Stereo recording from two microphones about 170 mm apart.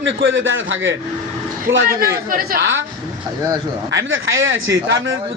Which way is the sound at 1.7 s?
60° right (ahead or behind).